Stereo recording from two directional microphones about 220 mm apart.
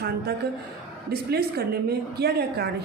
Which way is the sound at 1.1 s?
45° right (ahead or behind).